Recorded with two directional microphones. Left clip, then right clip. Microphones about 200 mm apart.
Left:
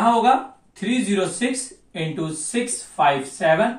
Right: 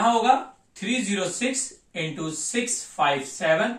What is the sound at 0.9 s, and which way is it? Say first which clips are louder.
A woman's voice: left 4 dB; 20° right (ahead or behind).